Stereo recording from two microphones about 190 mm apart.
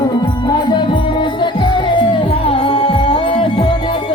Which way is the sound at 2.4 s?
30° left (ahead or behind).